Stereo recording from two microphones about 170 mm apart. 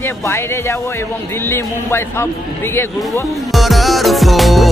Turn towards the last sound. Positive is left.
turn(degrees=0)  # may be behind; listen again after turning